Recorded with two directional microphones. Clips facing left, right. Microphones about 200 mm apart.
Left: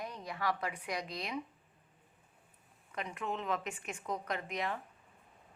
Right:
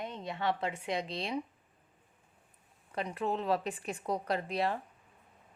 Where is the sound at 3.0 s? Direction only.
35° right (ahead or behind).